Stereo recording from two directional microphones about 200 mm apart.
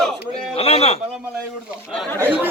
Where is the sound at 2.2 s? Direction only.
10° right (ahead or behind).